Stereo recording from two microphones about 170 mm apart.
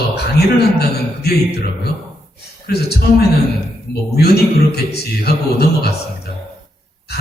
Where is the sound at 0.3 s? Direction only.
70° left (ahead or behind).